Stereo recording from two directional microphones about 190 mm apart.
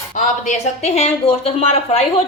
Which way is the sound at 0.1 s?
40° left (ahead or behind).